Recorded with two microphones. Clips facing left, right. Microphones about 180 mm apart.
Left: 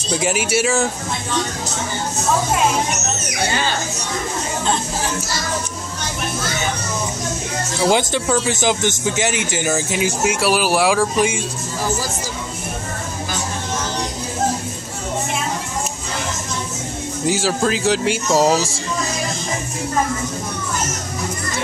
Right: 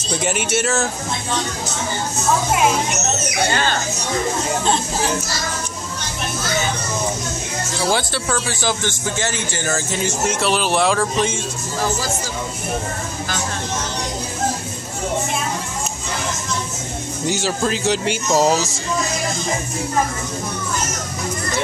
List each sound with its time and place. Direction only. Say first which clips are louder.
0.2 s speech: left 2 dB; 5° left (ahead or behind)
7.9 s speech: left 4 dB; 20° left (ahead or behind)
17.3 s speech: left 2 dB; 5° left (ahead or behind)